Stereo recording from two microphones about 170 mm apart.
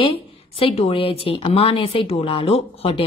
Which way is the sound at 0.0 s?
35° left (ahead or behind).